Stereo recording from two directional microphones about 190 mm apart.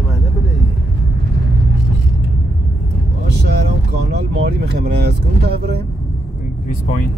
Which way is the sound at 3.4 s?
60° right (ahead or behind).